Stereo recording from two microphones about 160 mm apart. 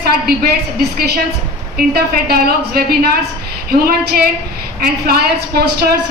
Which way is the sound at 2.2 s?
75° right (ahead or behind).